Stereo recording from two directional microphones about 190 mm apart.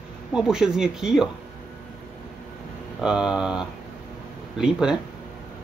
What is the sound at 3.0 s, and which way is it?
A man's voice, 5° right (ahead or behind).